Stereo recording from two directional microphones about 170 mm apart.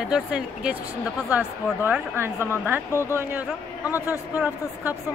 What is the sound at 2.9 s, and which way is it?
A man's voice, 15° left (ahead or behind).